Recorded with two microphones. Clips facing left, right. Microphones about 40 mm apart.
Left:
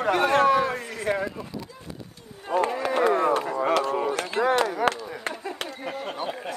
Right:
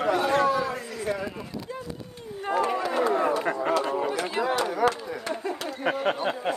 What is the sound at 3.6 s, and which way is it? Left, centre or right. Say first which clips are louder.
A man's voice: left 2 dB; left.